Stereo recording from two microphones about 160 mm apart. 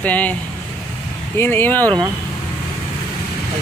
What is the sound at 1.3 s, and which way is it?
Speech, 15° left (ahead or behind).